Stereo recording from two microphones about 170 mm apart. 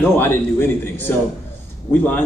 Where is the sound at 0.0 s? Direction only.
15° left (ahead or behind).